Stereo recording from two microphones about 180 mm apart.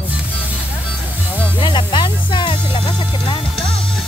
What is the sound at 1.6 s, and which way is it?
Music, 25° left (ahead or behind).